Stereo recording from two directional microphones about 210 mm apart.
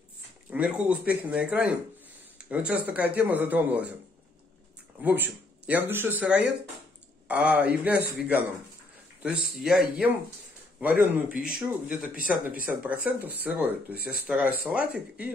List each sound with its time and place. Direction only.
0.5 s speech: 5° right (ahead or behind)
5.0 s speech: 10° right (ahead or behind)
12.3 s speech: 40° right (ahead or behind)
12.8 s speech: 5° right (ahead or behind)